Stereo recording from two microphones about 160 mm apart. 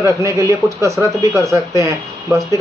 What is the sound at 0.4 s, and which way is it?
Speech, 20° right (ahead or behind).